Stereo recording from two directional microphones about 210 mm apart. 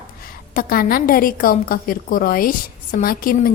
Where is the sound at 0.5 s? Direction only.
45° left (ahead or behind).